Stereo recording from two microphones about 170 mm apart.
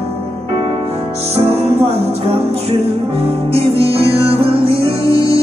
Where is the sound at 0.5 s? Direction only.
35° right (ahead or behind).